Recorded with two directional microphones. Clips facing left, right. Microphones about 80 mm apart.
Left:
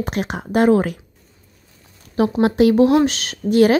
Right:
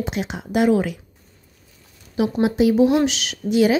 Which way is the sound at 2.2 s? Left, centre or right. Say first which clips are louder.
Left 3 dB; left.